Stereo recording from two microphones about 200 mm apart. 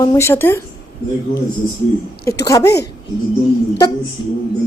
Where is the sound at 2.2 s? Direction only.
15° left (ahead or behind).